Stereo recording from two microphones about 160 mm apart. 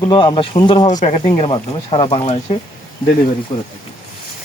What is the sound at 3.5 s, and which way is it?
Speech, 35° left (ahead or behind).